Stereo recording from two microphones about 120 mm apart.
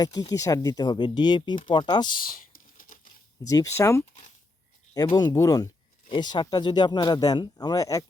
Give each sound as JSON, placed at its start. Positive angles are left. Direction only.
{"t": 0.0, "sound": "speech", "side_deg": 35}
{"t": 3.5, "sound": "speech", "side_deg": 25}
{"t": 5.1, "sound": "speech", "side_deg": 30}